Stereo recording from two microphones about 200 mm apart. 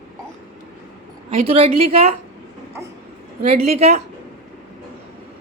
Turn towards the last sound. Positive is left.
turn(degrees=-30)  # may be behind; listen again after turning